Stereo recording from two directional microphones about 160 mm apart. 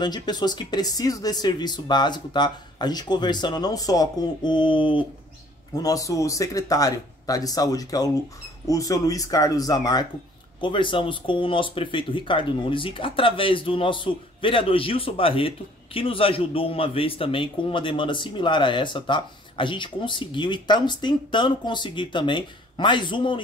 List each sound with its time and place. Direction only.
0.0 s speech: 25° left (ahead or behind)